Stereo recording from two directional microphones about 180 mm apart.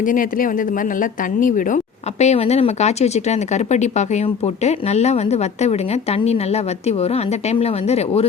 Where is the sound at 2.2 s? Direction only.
35° left (ahead or behind).